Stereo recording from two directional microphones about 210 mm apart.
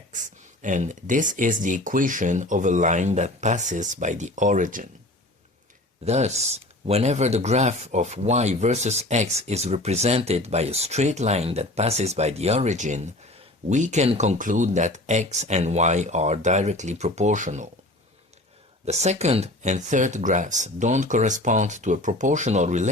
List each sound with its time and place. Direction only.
0.6 s speech: 35° right (ahead or behind)
6.1 s speech: 30° right (ahead or behind)
18.9 s speech: 30° right (ahead or behind)